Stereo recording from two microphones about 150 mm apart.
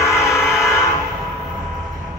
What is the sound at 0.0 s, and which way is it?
Train, 20° left (ahead or behind).